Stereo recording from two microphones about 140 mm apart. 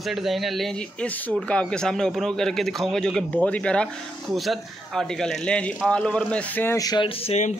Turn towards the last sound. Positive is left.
turn(degrees=50)  # may be behind; listen again after turning